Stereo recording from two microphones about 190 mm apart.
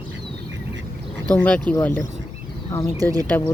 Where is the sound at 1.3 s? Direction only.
5° left (ahead or behind).